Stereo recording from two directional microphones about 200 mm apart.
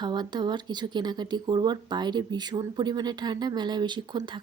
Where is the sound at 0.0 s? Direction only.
20° right (ahead or behind).